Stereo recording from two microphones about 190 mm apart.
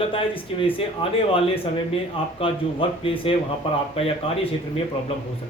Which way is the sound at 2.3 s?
30° left (ahead or behind).